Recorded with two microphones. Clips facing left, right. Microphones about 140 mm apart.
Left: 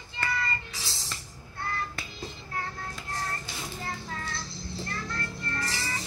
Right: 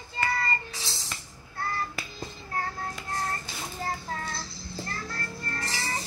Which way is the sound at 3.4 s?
35° right (ahead or behind).